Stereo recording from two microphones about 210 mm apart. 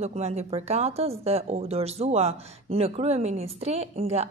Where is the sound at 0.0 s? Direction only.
30° right (ahead or behind).